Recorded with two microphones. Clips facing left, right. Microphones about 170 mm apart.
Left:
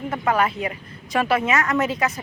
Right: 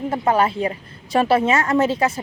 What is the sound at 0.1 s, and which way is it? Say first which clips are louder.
Speech: right 3 dB; 30° right (ahead or behind).